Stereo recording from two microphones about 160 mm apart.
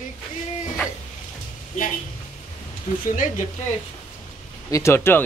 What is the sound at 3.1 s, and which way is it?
Speech, 50° left (ahead or behind).